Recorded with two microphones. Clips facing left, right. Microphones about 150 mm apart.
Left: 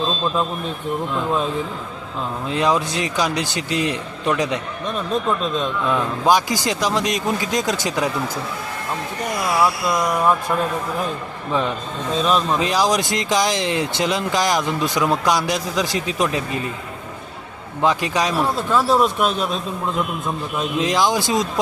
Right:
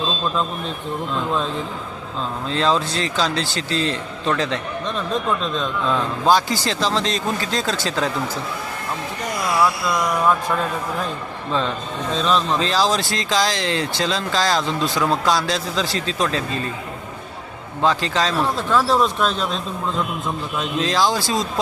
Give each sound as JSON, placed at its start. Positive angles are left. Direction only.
{"t": 1.1, "sound": "a man's voice", "side_deg": 10}
{"t": 2.5, "sound": "a man's voice", "side_deg": 15}
{"t": 12.1, "sound": "a man's voice", "side_deg": 10}
{"t": 17.8, "sound": "a man's voice", "side_deg": 15}
{"t": 20.6, "sound": "speech", "side_deg": 20}